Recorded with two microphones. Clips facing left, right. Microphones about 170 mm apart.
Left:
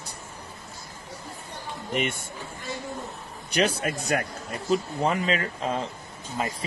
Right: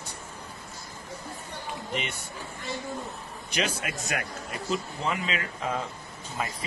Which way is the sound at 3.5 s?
35° left (ahead or behind).